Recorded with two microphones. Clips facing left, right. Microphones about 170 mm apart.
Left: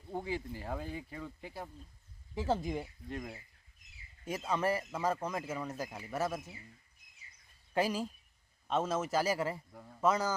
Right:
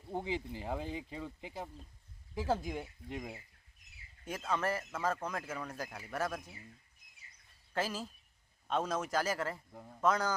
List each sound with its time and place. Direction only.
0.1 s speech: 15° right (ahead or behind)
2.3 s speech: centre (ahead or behind)
3.1 s speech: 15° right (ahead or behind)
4.3 s speech: 10° left (ahead or behind)
7.7 s speech: 10° left (ahead or behind)
9.7 s speech: 15° right (ahead or behind)
10.0 s speech: 5° left (ahead or behind)